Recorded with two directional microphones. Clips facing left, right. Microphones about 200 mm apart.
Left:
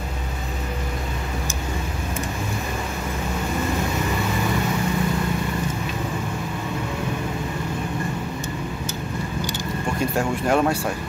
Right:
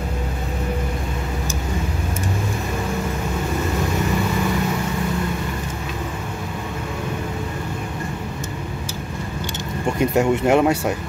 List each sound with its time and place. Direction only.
10.1 s speech: 20° right (ahead or behind)